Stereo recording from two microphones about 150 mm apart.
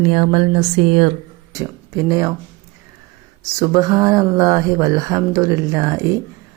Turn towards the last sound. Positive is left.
turn(degrees=-20)  # may be behind; listen again after turning